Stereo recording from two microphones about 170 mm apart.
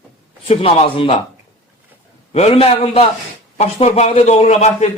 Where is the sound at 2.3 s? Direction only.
35° left (ahead or behind).